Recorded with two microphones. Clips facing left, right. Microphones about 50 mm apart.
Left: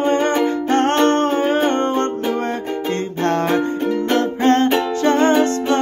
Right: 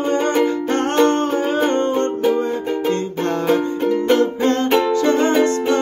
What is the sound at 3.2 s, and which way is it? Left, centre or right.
Music, left.